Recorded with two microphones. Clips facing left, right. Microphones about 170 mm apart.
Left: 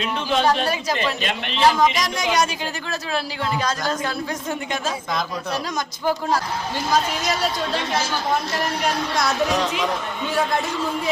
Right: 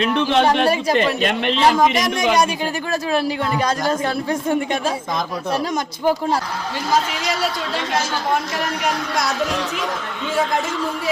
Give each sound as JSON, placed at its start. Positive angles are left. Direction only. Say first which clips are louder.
{"t": 0.0, "sound": "a man's voice", "louder": "right 4 dB", "side_deg": -70}
{"t": 4.0, "sound": "speech", "louder": "right 5 dB", "side_deg": -30}